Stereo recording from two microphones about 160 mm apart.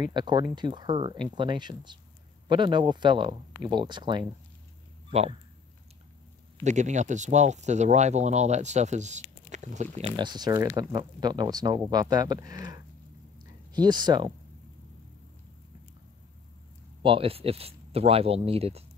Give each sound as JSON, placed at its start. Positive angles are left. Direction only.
{"t": 0.0, "sound": "speech", "side_deg": -25}
{"t": 5.1, "sound": "speech", "side_deg": -40}
{"t": 6.6, "sound": "speech", "side_deg": -50}
{"t": 10.1, "sound": "speech", "side_deg": -25}
{"t": 13.4, "sound": "a sound", "side_deg": -25}
{"t": 17.0, "sound": "speech", "side_deg": -35}